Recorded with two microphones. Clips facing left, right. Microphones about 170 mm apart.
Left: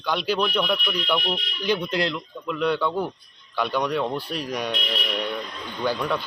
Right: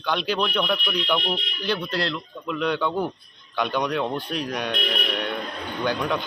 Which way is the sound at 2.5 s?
5° left (ahead or behind).